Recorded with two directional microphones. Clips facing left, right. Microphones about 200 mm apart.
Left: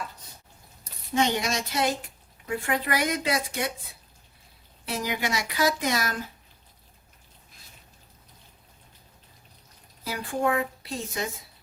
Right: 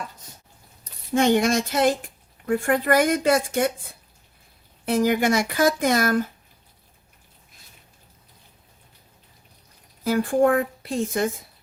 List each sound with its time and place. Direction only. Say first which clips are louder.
1.1 s speech: right 7 dB; 50° right (ahead or behind)
4.9 s speech: right 10 dB; 50° right (ahead or behind)
10.0 s speech: right 9 dB; 50° right (ahead or behind)